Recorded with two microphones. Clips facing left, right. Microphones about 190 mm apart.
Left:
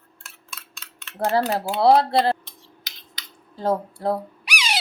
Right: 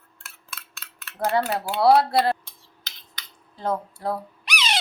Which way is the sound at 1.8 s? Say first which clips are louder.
Left 1 dB; 25° left (ahead or behind).